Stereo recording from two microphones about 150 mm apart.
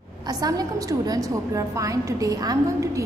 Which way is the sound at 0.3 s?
25° right (ahead or behind).